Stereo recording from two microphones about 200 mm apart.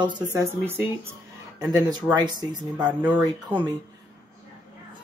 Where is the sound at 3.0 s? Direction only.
10° right (ahead or behind).